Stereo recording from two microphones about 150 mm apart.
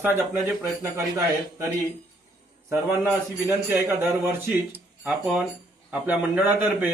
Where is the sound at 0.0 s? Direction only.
15° right (ahead or behind).